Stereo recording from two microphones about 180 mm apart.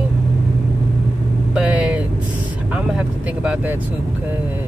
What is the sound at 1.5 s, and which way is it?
Vehicle, 5° right (ahead or behind).